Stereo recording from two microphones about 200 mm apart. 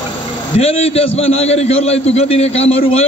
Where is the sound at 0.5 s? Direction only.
30° left (ahead or behind).